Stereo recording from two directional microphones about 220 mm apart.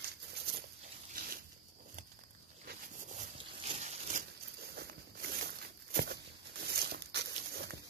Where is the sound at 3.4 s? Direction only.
30° right (ahead or behind).